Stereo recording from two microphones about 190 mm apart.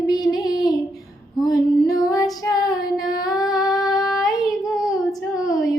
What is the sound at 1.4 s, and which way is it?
Female singing, 20° left (ahead or behind).